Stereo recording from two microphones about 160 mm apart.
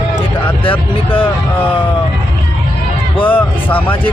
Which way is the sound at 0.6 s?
30° left (ahead or behind).